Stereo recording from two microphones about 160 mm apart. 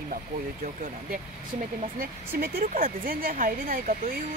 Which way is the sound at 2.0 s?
65° right (ahead or behind).